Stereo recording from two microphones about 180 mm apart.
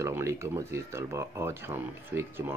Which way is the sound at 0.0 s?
15° right (ahead or behind).